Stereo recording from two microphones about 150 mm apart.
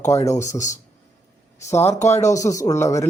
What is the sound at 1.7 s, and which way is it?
Speech, 15° left (ahead or behind).